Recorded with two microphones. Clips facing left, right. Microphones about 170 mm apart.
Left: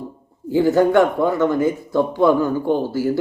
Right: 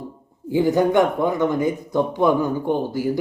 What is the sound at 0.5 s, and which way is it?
A man's voice, 15° right (ahead or behind).